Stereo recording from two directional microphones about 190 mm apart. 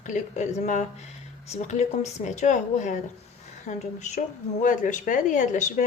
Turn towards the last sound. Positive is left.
turn(degrees=40)  # may be behind; listen again after turning